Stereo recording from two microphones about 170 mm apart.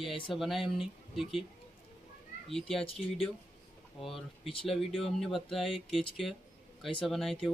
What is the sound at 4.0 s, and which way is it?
Speech, centre (ahead or behind).